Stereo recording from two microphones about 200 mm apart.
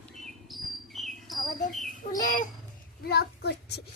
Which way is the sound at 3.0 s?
55° left (ahead or behind).